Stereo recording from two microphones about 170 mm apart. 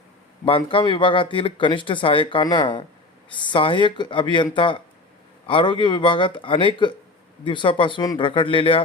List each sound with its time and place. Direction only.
0.4 s speech: 30° left (ahead or behind)